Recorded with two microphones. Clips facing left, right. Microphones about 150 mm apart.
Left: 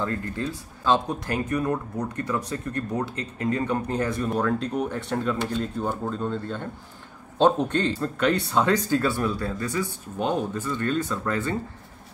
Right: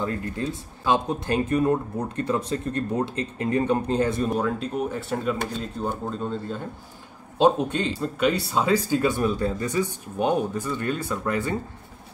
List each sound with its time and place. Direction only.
0.0 s speech: 15° right (ahead or behind)
4.4 s speech: 10° right (ahead or behind)